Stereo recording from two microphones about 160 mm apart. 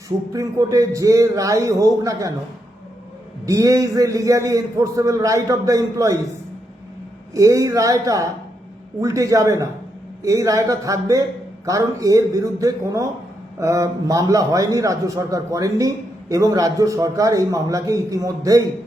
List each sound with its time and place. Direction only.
0.3 s a man's voice: 20° right (ahead or behind)
3.4 s a man's voice: 20° right (ahead or behind)
7.3 s a man's voice: 20° right (ahead or behind)